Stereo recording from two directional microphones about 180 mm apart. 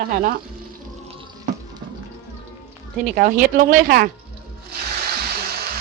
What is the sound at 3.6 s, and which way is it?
Speech, 50° right (ahead or behind).